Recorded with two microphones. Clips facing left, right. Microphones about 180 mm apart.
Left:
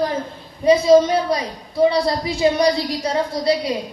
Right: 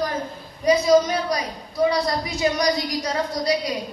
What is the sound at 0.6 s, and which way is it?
A woman's voice, 30° left (ahead or behind).